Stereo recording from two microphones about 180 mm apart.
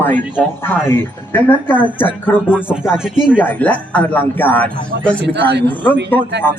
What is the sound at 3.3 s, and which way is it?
A man's voice, 10° left (ahead or behind).